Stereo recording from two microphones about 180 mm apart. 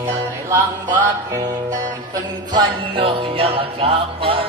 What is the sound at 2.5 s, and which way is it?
Music, 25° right (ahead or behind).